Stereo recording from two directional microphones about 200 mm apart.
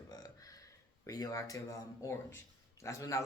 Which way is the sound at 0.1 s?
15° left (ahead or behind).